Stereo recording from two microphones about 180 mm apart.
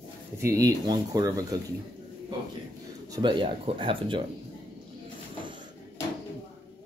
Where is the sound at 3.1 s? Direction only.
25° right (ahead or behind).